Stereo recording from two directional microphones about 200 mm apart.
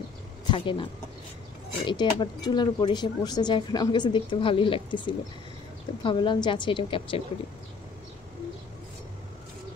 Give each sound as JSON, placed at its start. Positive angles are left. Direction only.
{"t": 0.5, "sound": "speech", "side_deg": 25}
{"t": 1.9, "sound": "a woman's voice", "side_deg": 20}